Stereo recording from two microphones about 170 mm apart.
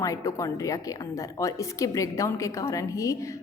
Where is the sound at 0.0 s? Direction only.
20° left (ahead or behind).